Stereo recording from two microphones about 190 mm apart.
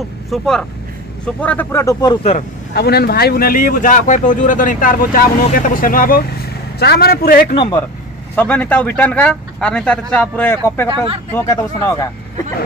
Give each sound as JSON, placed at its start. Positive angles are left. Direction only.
{"t": 0.3, "sound": "speech", "side_deg": 0}
{"t": 2.3, "sound": "speech", "side_deg": 55}
{"t": 7.5, "sound": "speech", "side_deg": 25}
{"t": 8.4, "sound": "speech", "side_deg": 10}